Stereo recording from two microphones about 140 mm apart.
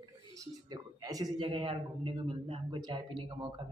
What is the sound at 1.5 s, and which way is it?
A man's voice, 40° right (ahead or behind).